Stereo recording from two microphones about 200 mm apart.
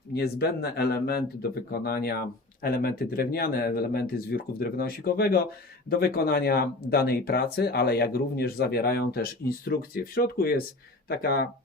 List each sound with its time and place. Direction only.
0.1 s speech: 55° left (ahead or behind)